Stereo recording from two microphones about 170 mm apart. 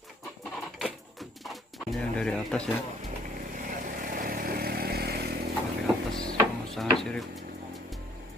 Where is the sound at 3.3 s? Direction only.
50° right (ahead or behind); by 5.5 s 70° right (ahead or behind).